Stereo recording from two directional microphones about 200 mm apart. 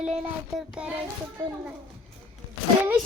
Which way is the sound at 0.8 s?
5° right (ahead or behind).